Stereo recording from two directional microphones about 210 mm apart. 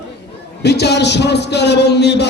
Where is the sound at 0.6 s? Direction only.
55° left (ahead or behind).